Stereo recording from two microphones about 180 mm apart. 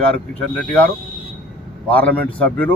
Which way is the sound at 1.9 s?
5° left (ahead or behind).